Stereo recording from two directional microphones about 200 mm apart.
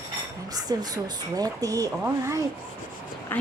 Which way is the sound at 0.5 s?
20° right (ahead or behind).